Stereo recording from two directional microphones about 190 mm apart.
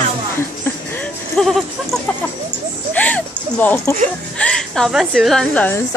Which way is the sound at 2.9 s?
10° left (ahead or behind).